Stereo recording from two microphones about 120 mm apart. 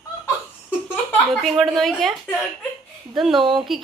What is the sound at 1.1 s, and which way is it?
A woman's voice, 5° left (ahead or behind).